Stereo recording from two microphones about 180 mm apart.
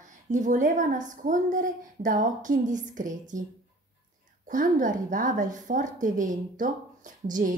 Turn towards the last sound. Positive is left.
turn(degrees=-45)  # may be behind; listen again after turning